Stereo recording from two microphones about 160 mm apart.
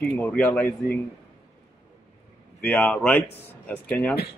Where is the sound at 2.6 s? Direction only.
10° left (ahead or behind).